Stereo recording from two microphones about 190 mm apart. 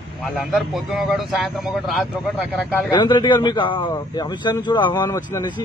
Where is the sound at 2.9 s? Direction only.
20° left (ahead or behind).